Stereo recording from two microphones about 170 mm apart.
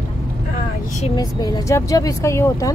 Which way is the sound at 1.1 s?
25° left (ahead or behind).